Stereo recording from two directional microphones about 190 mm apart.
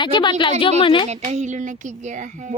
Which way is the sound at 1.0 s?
35° right (ahead or behind).